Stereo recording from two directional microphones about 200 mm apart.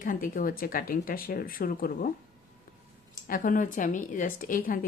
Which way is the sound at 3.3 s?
45° left (ahead or behind).